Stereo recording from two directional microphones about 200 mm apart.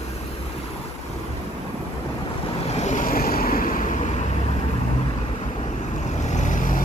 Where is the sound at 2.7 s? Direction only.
35° left (ahead or behind).